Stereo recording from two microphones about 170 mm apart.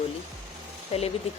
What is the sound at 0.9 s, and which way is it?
Speech, 40° left (ahead or behind).